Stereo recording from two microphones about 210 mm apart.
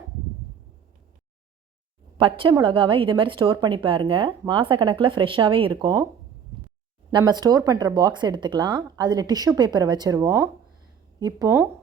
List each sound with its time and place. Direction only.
2.1 s speech: 25° right (ahead or behind)
7.1 s speech: 20° right (ahead or behind)